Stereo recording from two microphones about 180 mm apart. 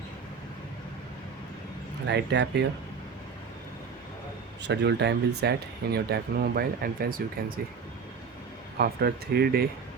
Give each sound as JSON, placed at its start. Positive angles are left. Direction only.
{"t": 2.0, "sound": "speech", "side_deg": -70}
{"t": 4.6, "sound": "speech", "side_deg": -70}
{"t": 8.8, "sound": "speech", "side_deg": -60}